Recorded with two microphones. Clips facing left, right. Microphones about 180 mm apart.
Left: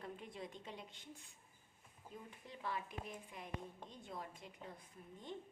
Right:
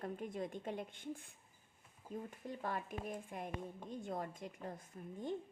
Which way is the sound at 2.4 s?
45° right (ahead or behind).